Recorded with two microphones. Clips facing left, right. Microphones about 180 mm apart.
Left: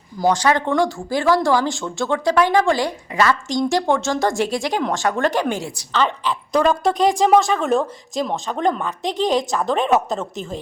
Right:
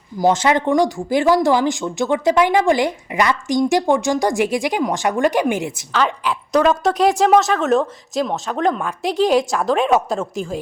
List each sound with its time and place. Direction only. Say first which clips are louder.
0.2 s speech: right 2 dB; 20° right (ahead or behind)
5.9 s a woman's voice: even; 5° right (ahead or behind)